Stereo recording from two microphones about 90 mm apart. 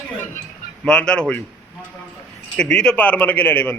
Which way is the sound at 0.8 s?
10° left (ahead or behind).